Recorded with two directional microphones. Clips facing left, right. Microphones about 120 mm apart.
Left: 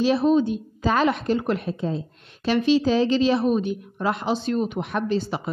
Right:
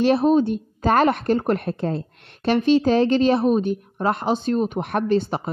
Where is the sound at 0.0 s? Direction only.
55° right (ahead or behind).